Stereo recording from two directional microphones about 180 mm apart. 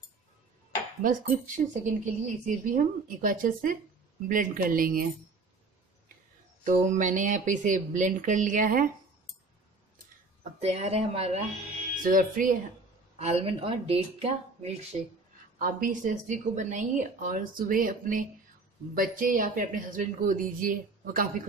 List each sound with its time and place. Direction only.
1.0 s speech: 50° right (ahead or behind)
6.6 s speech: 45° right (ahead or behind)
10.6 s speech: 35° right (ahead or behind)
12.0 s speech: 50° right (ahead or behind)
13.2 s speech: 35° right (ahead or behind)
15.6 s speech: 45° right (ahead or behind)